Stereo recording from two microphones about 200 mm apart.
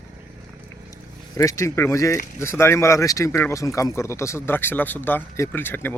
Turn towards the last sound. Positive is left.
turn(degrees=10)  # may be behind; listen again after turning